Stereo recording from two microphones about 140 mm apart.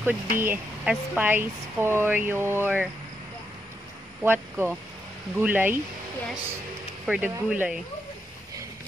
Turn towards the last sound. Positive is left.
turn(degrees=-10)  # may be behind; listen again after turning